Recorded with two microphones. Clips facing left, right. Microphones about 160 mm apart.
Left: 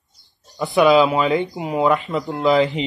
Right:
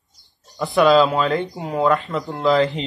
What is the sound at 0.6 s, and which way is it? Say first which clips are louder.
Speech: even; centre (ahead or behind).